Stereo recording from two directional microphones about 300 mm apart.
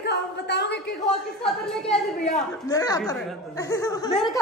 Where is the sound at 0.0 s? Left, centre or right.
Left.